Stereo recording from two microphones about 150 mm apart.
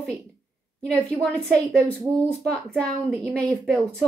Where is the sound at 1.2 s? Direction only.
10° left (ahead or behind).